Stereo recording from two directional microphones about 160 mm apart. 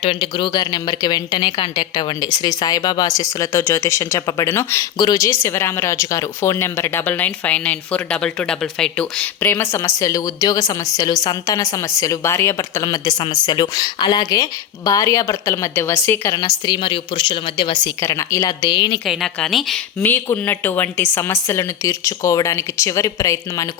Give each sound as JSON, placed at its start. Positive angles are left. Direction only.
{"t": 0.0, "sound": "speech", "side_deg": 30}
{"t": 16.6, "sound": "speech", "side_deg": 30}
{"t": 19.0, "sound": "a woman's voice", "side_deg": 0}
{"t": 20.0, "sound": "speech", "side_deg": 15}